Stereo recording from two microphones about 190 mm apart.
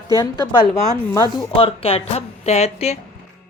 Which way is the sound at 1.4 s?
30° left (ahead or behind).